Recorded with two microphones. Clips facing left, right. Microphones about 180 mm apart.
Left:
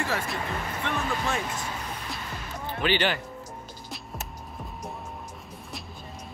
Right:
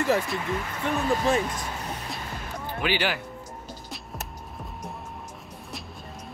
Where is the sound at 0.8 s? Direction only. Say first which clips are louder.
Right 6 dB; 35° right (ahead or behind).